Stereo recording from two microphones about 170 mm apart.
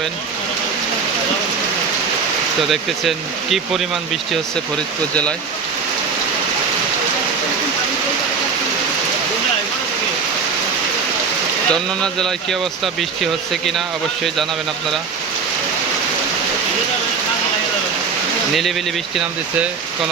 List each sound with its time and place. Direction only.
2.6 s speech: centre (ahead or behind)
11.7 s speech: 5° left (ahead or behind)